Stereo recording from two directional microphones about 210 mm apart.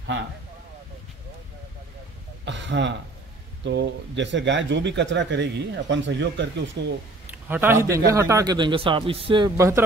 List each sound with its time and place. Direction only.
2.4 s speech: 55° right (ahead or behind)
7.4 s a man's voice: 10° right (ahead or behind)